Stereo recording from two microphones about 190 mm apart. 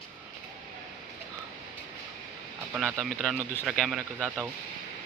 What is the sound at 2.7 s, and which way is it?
Speech, 5° right (ahead or behind).